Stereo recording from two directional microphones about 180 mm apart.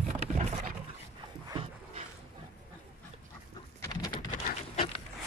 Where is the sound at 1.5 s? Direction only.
30° right (ahead or behind).